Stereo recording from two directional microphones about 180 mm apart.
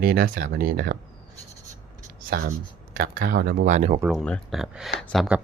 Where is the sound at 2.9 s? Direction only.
55° right (ahead or behind).